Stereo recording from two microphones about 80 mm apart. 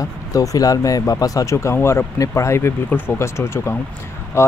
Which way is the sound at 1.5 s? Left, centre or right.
Left.